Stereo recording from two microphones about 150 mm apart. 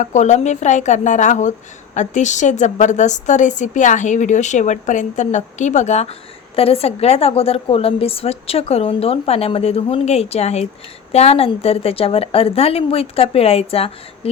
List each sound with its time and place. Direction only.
0.0 s a woman's voice: 50° left (ahead or behind)